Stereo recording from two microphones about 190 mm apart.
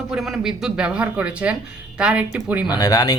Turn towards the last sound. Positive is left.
turn(degrees=20)  # may be behind; listen again after turning